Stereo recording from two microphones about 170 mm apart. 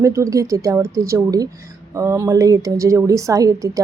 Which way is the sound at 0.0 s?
15° right (ahead or behind).